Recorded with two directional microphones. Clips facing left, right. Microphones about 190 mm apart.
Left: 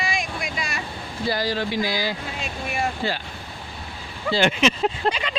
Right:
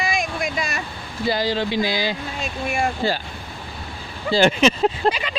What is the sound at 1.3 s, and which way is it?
Speech, 25° right (ahead or behind).